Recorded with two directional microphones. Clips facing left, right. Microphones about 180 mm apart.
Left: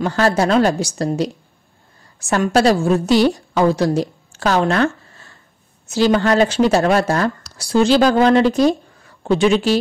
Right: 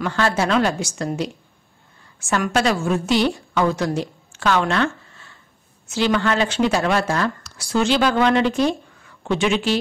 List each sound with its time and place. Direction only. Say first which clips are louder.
0.0 s a woman's voice: left 4 dB; 35° left (ahead or behind)